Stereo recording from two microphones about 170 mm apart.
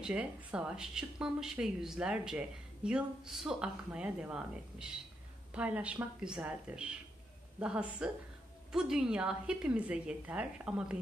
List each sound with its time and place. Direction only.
0.0 s a woman's voice: 5° right (ahead or behind)